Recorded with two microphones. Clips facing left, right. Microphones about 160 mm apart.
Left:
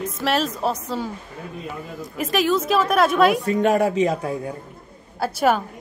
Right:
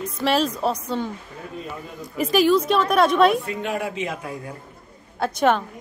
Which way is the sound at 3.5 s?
40° left (ahead or behind).